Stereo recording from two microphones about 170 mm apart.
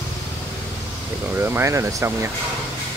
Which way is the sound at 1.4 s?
15° right (ahead or behind).